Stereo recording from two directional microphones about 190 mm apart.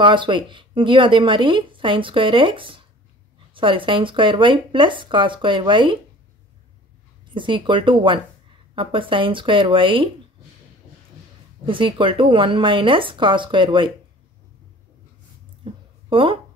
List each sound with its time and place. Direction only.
0.0 s speech: 25° right (ahead or behind)
7.3 s speech: 25° right (ahead or behind)
11.6 s speech: 25° right (ahead or behind)
15.6 s a sound: 25° right (ahead or behind)